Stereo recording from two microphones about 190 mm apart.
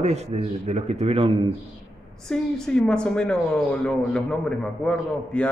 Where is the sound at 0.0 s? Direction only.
35° right (ahead or behind).